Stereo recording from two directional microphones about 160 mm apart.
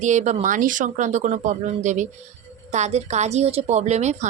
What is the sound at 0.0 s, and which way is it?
A woman's voice, 50° right (ahead or behind).